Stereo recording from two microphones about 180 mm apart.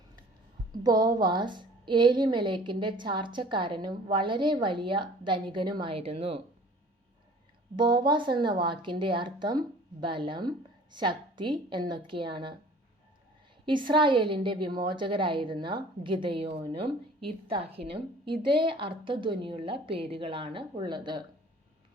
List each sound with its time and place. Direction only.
0.8 s a woman's voice: 20° right (ahead or behind)
7.8 s a woman's voice: 25° right (ahead or behind)
13.7 s a woman's voice: 25° right (ahead or behind)